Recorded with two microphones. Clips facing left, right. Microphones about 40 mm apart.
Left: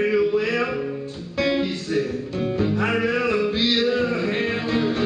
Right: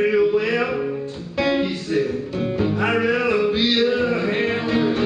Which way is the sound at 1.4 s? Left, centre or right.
Centre.